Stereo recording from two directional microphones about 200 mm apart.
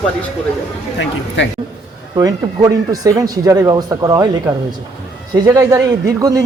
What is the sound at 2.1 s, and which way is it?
Speech, 20° right (ahead or behind).